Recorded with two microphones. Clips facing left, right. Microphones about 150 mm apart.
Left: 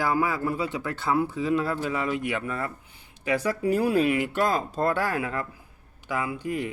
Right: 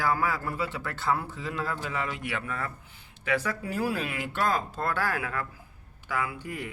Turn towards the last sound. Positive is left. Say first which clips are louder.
# left 5 dB
turn(degrees=20)  # may be behind; listen again after turning